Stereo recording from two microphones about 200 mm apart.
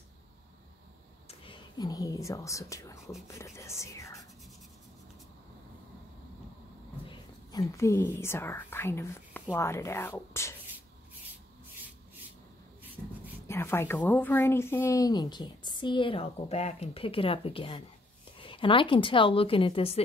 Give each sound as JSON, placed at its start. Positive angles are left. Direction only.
{"t": 1.4, "sound": "speech", "side_deg": 25}
{"t": 7.7, "sound": "speech", "side_deg": 15}
{"t": 13.5, "sound": "speech", "side_deg": 10}